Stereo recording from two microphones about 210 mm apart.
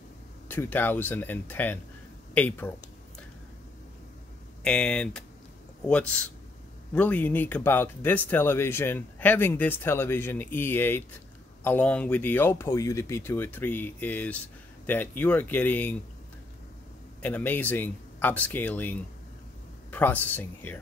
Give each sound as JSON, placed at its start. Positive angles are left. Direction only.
{"t": 0.5, "sound": "speech", "side_deg": 10}
{"t": 4.6, "sound": "speech", "side_deg": 5}
{"t": 17.2, "sound": "speech", "side_deg": 10}